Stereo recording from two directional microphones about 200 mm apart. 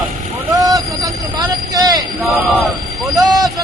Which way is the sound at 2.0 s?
Centre (ahead or behind).